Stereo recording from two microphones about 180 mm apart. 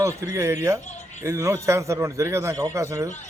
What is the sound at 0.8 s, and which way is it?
Speech, 40° left (ahead or behind).